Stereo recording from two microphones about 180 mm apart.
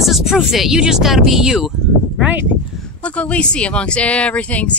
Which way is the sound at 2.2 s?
10° right (ahead or behind).